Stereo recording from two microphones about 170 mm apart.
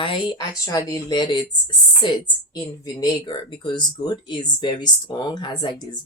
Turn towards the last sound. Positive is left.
turn(degrees=25)  # may be behind; listen again after turning